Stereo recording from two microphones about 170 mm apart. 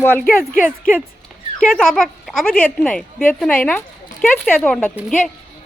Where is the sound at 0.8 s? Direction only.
50° left (ahead or behind).